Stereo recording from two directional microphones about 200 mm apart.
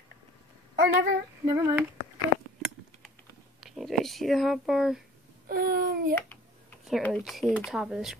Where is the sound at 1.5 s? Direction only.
15° right (ahead or behind).